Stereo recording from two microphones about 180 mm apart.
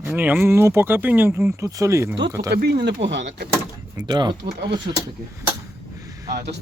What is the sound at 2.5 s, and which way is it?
Speech, 65° right (ahead or behind).